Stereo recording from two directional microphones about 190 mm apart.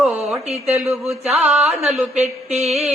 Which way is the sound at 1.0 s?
Centre (ahead or behind).